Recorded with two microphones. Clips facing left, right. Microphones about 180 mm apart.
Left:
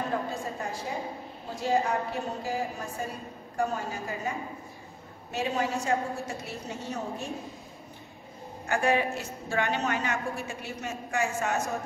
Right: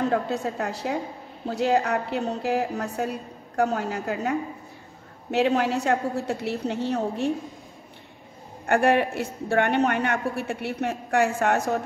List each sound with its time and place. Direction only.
0.1 s a woman's voice: 70° right (ahead or behind)
8.6 s a woman's voice: 60° right (ahead or behind)